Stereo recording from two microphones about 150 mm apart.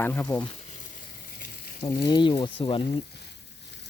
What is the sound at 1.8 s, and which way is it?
Speech, 20° left (ahead or behind).